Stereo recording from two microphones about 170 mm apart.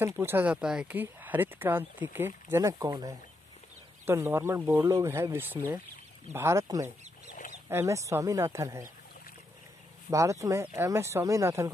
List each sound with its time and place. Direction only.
0.0 s speech: 15° right (ahead or behind)
10.1 s speech: 20° right (ahead or behind)